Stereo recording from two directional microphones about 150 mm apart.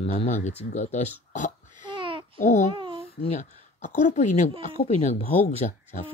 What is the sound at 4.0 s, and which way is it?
Speech, 50° left (ahead or behind).